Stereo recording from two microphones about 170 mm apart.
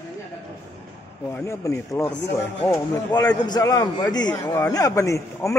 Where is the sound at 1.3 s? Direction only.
15° left (ahead or behind).